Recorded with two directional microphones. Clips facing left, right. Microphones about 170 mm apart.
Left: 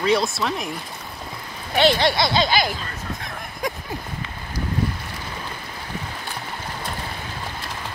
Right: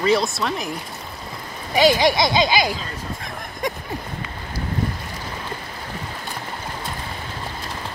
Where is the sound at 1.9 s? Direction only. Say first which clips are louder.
Right 2 dB; 15° right (ahead or behind).